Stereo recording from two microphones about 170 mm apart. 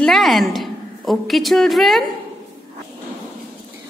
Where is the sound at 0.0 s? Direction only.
Centre (ahead or behind).